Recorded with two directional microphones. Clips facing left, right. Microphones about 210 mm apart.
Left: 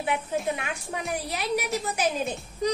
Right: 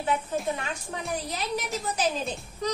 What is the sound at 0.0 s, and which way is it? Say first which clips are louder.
Speech: even; 10° left (ahead or behind).